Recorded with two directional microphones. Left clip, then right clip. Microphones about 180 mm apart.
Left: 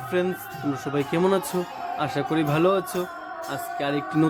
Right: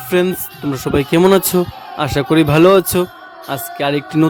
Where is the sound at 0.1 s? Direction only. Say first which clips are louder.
Right 10 dB; 65° right (ahead or behind).